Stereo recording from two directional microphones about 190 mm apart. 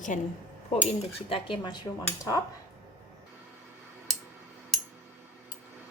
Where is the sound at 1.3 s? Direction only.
25° left (ahead or behind).